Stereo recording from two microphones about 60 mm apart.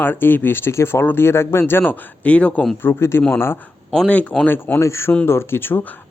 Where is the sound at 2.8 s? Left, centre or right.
Left.